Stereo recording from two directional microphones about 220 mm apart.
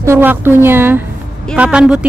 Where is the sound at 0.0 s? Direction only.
10° right (ahead or behind).